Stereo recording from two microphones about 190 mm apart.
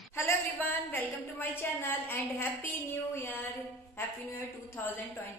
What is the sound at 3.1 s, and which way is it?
Music, 10° left (ahead or behind).